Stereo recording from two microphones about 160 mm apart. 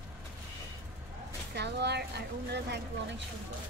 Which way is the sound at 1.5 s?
90° right.